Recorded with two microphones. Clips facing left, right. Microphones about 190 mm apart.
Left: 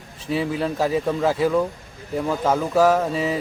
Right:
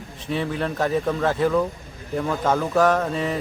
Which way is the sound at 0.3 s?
5° left (ahead or behind).